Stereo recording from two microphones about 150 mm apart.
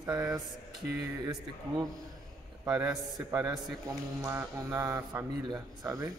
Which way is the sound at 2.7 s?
10° right (ahead or behind).